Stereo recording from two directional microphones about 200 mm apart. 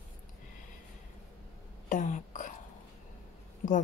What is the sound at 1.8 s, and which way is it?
Speech, 40° left (ahead or behind).